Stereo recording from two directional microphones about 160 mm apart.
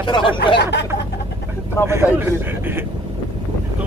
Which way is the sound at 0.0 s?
30° left (ahead or behind).